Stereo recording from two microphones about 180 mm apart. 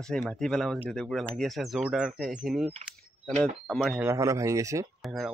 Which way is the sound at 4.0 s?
15° right (ahead or behind).